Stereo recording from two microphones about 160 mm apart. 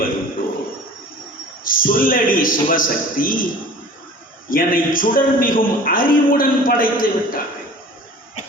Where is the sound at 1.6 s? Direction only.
60° left (ahead or behind).